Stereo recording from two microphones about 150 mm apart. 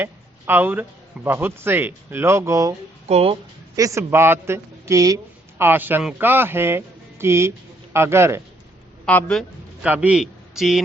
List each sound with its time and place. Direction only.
0.0 s a man's voice: 15° right (ahead or behind)
3.1 s speech: 45° right (ahead or behind)
3.8 s a man's voice: 20° right (ahead or behind)
9.0 s speech: 10° left (ahead or behind)
9.8 s a man's voice: 10° right (ahead or behind)